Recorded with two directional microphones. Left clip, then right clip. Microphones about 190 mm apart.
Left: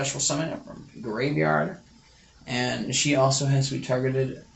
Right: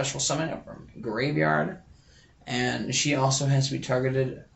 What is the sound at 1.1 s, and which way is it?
Speech, 15° right (ahead or behind).